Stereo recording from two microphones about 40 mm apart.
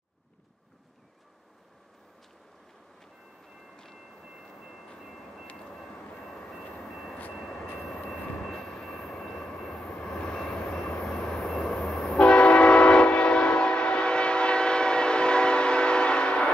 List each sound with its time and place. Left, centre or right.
6.2 s vehicle: centre
6.8 s vehicle: centre
8.1 s train: centre
8.6 s train: centre
11.0 s vehicle: centre
12.0 s train: left